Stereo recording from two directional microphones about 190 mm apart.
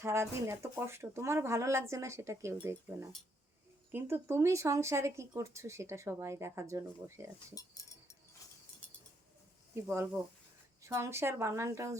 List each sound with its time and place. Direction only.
0.0 s speech: 15° right (ahead or behind)
7.5 s speech: 15° left (ahead or behind)
9.7 s speech: 15° right (ahead or behind)